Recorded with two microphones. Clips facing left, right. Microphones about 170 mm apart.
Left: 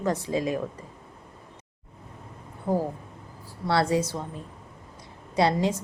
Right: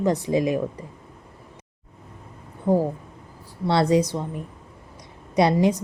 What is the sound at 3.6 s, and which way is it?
Speech, 20° right (ahead or behind).